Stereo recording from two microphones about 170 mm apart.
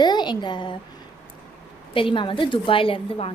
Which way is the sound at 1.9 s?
30° left (ahead or behind).